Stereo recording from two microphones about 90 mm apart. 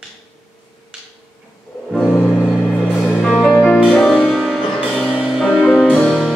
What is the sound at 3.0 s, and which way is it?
Music, 5° left (ahead or behind).